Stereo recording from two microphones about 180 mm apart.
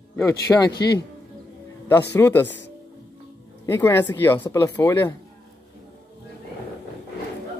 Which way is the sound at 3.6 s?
10° left (ahead or behind).